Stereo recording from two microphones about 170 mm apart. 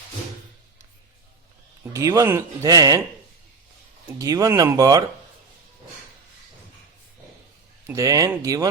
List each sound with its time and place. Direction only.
1.8 s speech: 20° right (ahead or behind)
4.2 s speech: 20° right (ahead or behind)
7.9 s speech: 20° right (ahead or behind)